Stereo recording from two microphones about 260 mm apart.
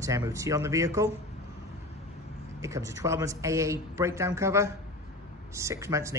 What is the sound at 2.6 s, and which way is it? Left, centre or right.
Speech, centre.